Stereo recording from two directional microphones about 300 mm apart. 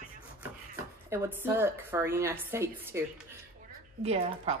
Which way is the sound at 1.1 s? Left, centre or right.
Centre.